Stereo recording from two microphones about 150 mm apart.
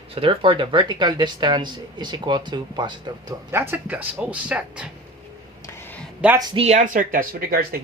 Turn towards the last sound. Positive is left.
turn(degrees=-80)